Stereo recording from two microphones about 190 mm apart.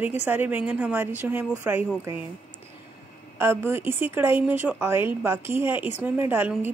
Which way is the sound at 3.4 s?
10° right (ahead or behind).